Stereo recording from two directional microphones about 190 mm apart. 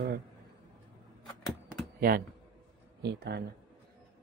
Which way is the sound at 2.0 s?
50° right (ahead or behind).